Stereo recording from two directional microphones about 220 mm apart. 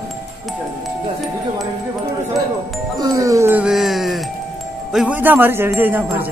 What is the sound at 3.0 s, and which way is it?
Music, 15° right (ahead or behind).